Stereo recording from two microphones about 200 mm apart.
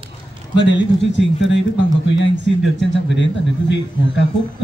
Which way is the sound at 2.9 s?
65° left (ahead or behind).